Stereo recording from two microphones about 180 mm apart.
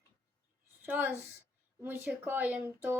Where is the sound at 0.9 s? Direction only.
10° right (ahead or behind).